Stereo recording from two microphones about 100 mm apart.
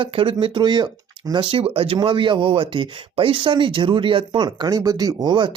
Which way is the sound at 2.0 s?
55° right (ahead or behind).